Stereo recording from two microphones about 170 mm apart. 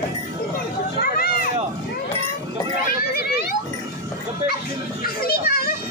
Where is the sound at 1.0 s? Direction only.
60° left (ahead or behind).